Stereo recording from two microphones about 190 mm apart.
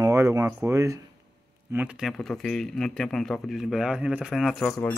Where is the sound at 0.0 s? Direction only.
15° right (ahead or behind); by 4.6 s centre (ahead or behind).